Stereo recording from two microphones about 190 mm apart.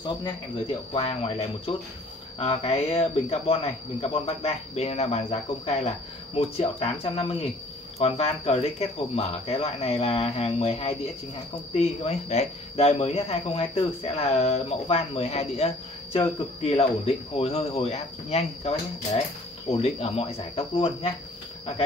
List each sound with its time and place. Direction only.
0.0 s speech: 30° left (ahead or behind)